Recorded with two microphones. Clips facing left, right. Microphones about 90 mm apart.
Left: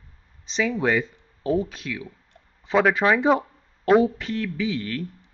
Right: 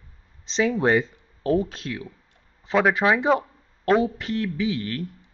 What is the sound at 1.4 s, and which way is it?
Speech, 15° left (ahead or behind).